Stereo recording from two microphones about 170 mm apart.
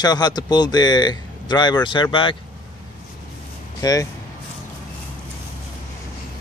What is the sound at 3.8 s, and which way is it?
Speech, 20° left (ahead or behind).